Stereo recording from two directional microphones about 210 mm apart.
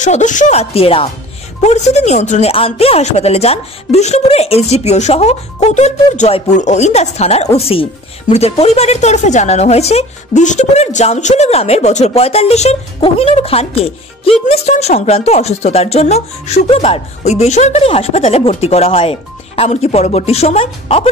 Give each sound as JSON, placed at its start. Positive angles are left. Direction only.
{"t": 0.0, "sound": "a woman's voice", "side_deg": 35}